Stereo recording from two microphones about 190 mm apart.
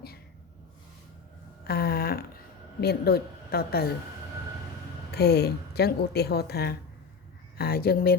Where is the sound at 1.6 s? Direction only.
55° left (ahead or behind).